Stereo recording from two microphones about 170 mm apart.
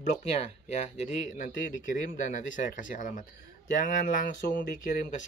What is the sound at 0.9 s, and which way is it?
Speech, 45° left (ahead or behind).